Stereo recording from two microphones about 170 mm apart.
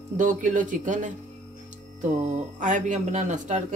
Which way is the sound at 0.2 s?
50° right (ahead or behind).